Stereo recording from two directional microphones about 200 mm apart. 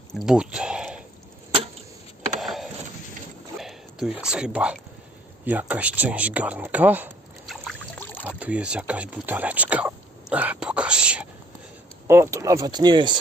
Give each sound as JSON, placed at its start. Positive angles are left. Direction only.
{"t": 0.1, "sound": "speech", "side_deg": 0}
{"t": 2.4, "sound": "a sound", "side_deg": 0}
{"t": 3.6, "sound": "speech", "side_deg": 0}
{"t": 7.9, "sound": "rowboat", "side_deg": 10}
{"t": 8.3, "sound": "speech", "side_deg": -5}